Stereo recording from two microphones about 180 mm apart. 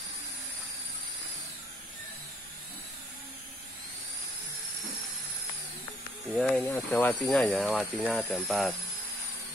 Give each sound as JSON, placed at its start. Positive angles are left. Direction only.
{"t": 6.3, "sound": "speech", "side_deg": 5}